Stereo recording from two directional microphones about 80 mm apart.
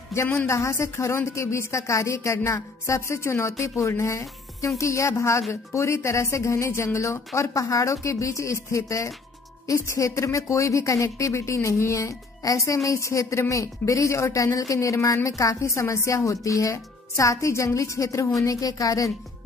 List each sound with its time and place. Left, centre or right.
0.1 s a woman's voice: left